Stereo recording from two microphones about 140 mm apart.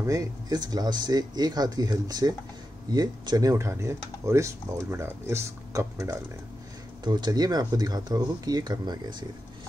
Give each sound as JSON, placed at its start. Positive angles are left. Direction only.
{"t": 0.0, "sound": "speech", "side_deg": -25}